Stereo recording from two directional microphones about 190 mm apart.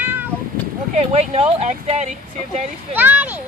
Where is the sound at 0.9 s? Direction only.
35° right (ahead or behind).